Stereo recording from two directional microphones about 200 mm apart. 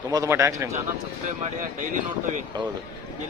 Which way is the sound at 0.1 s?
15° right (ahead or behind).